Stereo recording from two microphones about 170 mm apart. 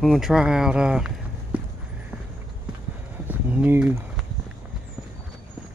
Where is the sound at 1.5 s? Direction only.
10° right (ahead or behind).